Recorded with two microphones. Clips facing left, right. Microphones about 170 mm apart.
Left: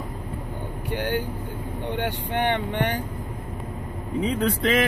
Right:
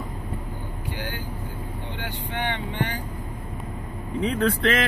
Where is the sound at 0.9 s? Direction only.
60° left (ahead or behind).